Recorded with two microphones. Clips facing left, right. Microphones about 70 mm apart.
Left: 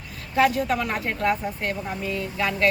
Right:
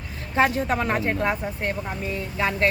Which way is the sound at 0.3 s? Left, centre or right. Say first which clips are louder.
Left 1 dB; right.